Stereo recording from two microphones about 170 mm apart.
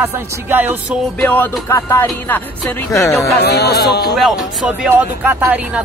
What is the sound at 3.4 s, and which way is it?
Speech, 70° left (ahead or behind).